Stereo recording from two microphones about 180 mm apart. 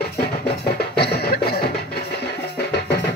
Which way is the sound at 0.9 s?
65° left (ahead or behind).